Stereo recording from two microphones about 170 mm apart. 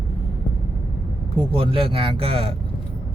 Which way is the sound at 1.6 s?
30° right (ahead or behind).